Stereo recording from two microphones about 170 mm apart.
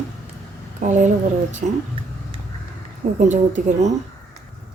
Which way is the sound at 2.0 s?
30° right (ahead or behind).